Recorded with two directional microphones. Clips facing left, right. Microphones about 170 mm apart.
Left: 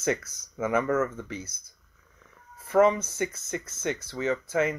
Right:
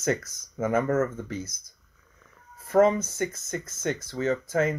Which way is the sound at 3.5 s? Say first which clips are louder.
Right 1 dB; 45° right (ahead or behind).